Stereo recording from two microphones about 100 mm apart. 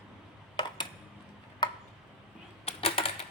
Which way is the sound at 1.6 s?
50° left (ahead or behind).